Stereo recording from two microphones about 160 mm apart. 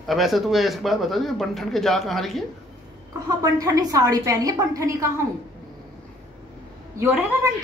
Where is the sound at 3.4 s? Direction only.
20° right (ahead or behind).